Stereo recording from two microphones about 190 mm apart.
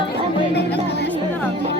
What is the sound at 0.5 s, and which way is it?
Music, 60° left (ahead or behind).